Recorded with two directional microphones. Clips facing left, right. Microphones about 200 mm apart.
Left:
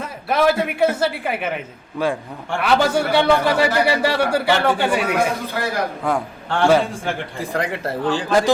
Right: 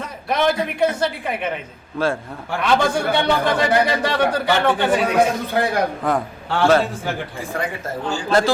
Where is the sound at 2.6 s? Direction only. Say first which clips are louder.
Left 1 dB; 5° left (ahead or behind).